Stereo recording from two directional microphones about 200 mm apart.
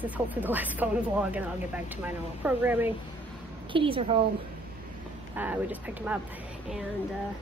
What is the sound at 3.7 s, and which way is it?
Speech, 25° right (ahead or behind).